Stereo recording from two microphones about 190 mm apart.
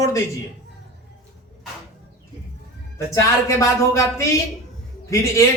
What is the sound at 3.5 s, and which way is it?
A man's voice, 15° left (ahead or behind).